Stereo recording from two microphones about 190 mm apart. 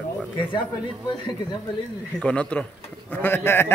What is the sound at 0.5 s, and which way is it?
Speech, 25° left (ahead or behind).